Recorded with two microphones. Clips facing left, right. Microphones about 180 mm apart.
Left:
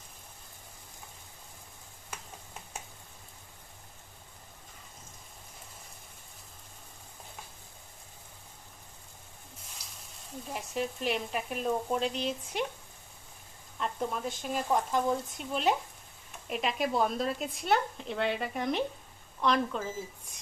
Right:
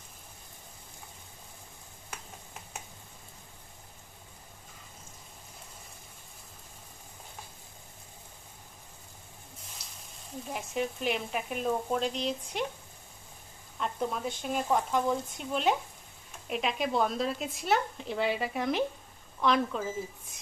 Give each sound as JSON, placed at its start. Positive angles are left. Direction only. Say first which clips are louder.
{"t": 10.5, "sound": "speech", "louder": "right 1 dB", "side_deg": 0}
{"t": 13.7, "sound": "speech", "louder": "right 1 dB", "side_deg": 0}